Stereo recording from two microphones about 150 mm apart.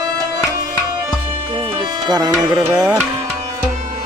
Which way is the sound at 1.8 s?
25° right (ahead or behind).